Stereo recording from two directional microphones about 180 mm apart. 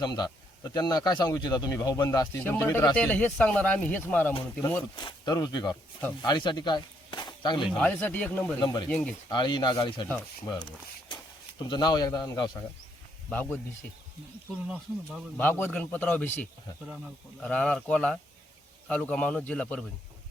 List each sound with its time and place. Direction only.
0.0 s speech: 20° left (ahead or behind)
4.9 s speech: 25° left (ahead or behind)
7.8 s speech: 5° left (ahead or behind)
8.6 s speech: 25° left (ahead or behind)
8.9 s speech: 5° left (ahead or behind)
9.3 s speech: 25° left (ahead or behind)
11.6 s speech: 25° left (ahead or behind)
13.3 s speech: 10° left (ahead or behind)
15.4 s speech: 10° left (ahead or behind)